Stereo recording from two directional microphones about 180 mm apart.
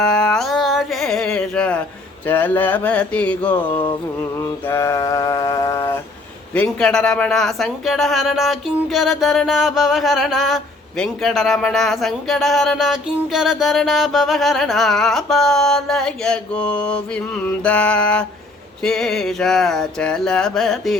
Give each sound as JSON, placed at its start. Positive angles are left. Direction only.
{"t": 0.0, "sound": "music", "side_deg": 5}
{"t": 2.2, "sound": "a man's voice", "side_deg": 10}